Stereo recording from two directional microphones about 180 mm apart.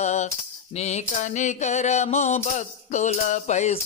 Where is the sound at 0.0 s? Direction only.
40° left (ahead or behind).